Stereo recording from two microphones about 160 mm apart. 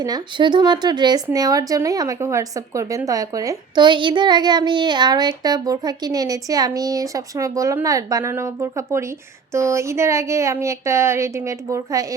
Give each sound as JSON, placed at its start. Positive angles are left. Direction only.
{"t": 0.0, "sound": "a child's voice", "side_deg": -25}